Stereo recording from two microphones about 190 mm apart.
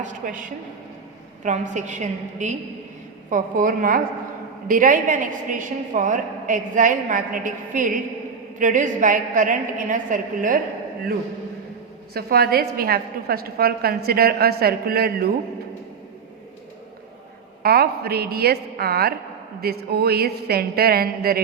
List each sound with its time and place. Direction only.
0.0 s a woman's voice: 45° right (ahead or behind)
12.1 s a woman's voice: 55° right (ahead or behind)
17.6 s speech: 55° right (ahead or behind)